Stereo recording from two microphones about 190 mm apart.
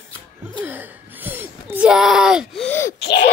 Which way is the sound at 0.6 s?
10° right (ahead or behind).